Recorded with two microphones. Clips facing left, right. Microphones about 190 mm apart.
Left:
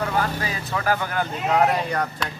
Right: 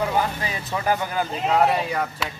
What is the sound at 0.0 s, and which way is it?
Speech, 15° right (ahead or behind).